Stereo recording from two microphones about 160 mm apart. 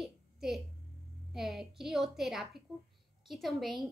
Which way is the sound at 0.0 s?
Centre (ahead or behind).